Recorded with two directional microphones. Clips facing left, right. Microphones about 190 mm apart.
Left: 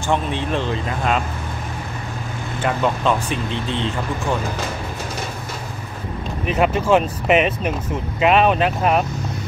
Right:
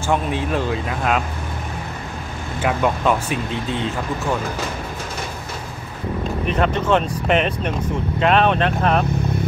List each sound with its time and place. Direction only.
0.0 s speech: 5° right (ahead or behind)
2.6 s speech: 10° right (ahead or behind)
6.4 s speech: 5° left (ahead or behind)